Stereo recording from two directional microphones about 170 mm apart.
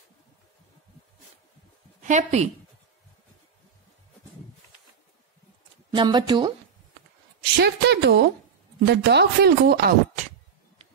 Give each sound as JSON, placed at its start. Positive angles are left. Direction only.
{"t": 2.0, "sound": "a woman's voice", "side_deg": -45}
{"t": 5.9, "sound": "speech", "side_deg": -25}
{"t": 7.5, "sound": "a woman's voice", "side_deg": -85}
{"t": 8.8, "sound": "a woman's voice", "side_deg": -75}